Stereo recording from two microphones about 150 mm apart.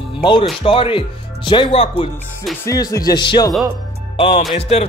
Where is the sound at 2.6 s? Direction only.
20° left (ahead or behind).